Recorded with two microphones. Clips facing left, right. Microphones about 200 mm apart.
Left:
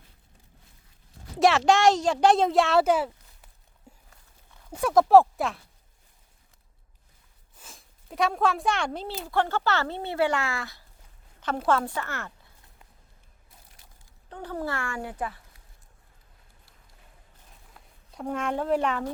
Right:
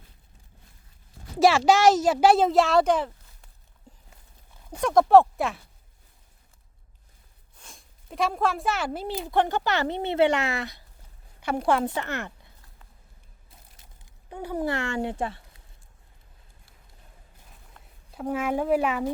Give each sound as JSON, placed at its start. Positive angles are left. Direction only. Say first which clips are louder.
{"t": 1.4, "sound": "a child's voice", "louder": "right 2 dB", "side_deg": 0}
{"t": 3.9, "sound": "horse", "louder": "even", "side_deg": 10}
{"t": 4.8, "sound": "a child's voice", "louder": "even", "side_deg": 5}
{"t": 7.6, "sound": "speech", "louder": "even", "side_deg": 0}
{"t": 14.0, "sound": "speech", "louder": "right 3 dB", "side_deg": -10}
{"t": 18.1, "sound": "speech", "louder": "right 3 dB", "side_deg": -5}